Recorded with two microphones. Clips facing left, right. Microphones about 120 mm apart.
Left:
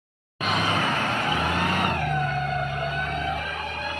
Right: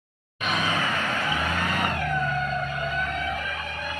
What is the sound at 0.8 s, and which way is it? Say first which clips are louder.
Vehicle: left 2 dB; 25° left (ahead or behind).